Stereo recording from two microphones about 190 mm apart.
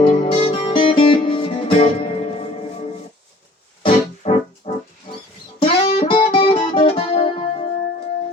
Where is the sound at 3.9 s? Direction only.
35° left (ahead or behind).